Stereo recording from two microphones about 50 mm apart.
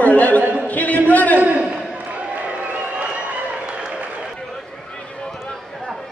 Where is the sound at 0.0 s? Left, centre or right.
Left.